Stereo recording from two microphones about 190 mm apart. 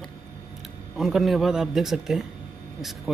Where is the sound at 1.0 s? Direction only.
Centre (ahead or behind).